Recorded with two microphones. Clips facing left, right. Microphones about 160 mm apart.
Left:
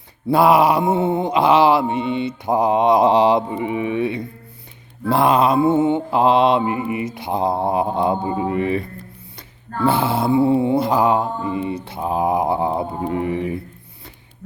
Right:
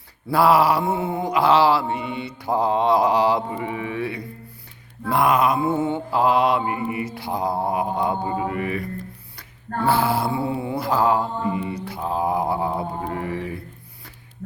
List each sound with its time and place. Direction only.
0.3 s mantra: 20° left (ahead or behind)